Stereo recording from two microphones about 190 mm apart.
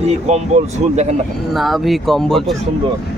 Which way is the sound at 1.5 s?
Centre (ahead or behind).